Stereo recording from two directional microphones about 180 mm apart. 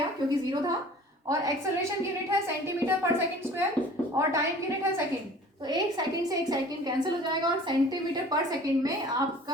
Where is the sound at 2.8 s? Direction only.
15° right (ahead or behind).